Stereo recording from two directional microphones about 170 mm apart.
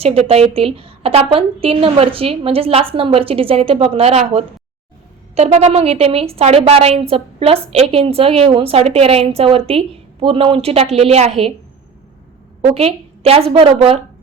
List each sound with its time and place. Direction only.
0.0 s a woman's voice: 35° right (ahead or behind)
12.6 s a woman's voice: 35° right (ahead or behind)